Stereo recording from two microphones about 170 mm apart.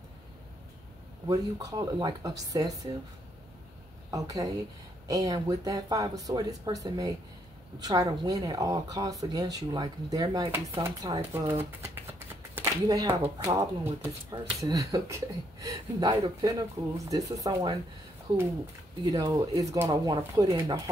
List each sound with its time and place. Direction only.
1.2 s speech: 20° right (ahead or behind)
4.1 s speech: 20° right (ahead or behind)
10.5 s speech: 15° right (ahead or behind)
19.0 s speech: 20° right (ahead or behind)